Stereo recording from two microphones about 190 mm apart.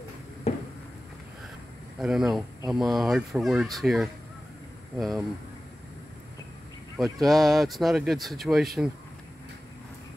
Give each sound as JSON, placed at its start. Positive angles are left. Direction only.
{"t": 0.5, "sound": "a sound", "side_deg": 35}
{"t": 2.0, "sound": "speech", "side_deg": 0}
{"t": 7.0, "sound": "speech", "side_deg": 0}